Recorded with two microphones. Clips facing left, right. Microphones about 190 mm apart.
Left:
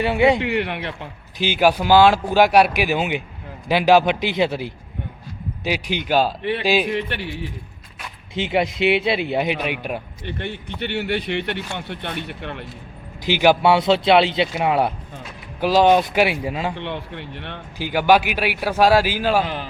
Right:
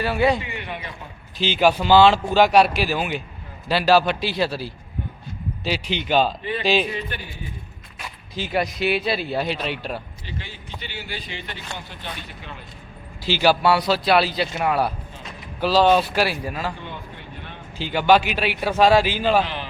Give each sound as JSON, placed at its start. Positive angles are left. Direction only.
{"t": 0.0, "sound": "a man's voice", "side_deg": 20}
{"t": 0.3, "sound": "speech", "side_deg": 70}
{"t": 1.4, "sound": "speech", "side_deg": 10}
{"t": 6.8, "sound": "speech", "side_deg": 70}
{"t": 8.4, "sound": "a man's voice", "side_deg": 25}
{"t": 10.2, "sound": "a man's voice", "side_deg": 60}
{"t": 13.2, "sound": "a man's voice", "side_deg": 15}
{"t": 16.7, "sound": "speech", "side_deg": 75}
{"t": 17.7, "sound": "speech", "side_deg": 10}